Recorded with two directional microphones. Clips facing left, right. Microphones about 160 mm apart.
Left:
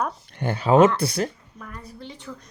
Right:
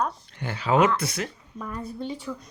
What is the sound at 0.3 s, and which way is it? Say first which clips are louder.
Speech: left 6 dB; 50° left (ahead or behind).